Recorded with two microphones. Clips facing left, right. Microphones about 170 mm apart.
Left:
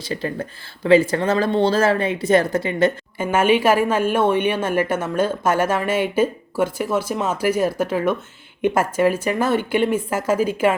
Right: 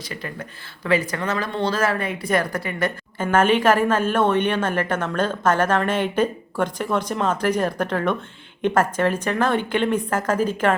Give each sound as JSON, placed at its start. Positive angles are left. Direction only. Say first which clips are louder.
{"t": 0.0, "sound": "speech", "louder": "left 7 dB", "side_deg": 30}
{"t": 3.2, "sound": "a woman's voice", "louder": "left 1 dB", "side_deg": 10}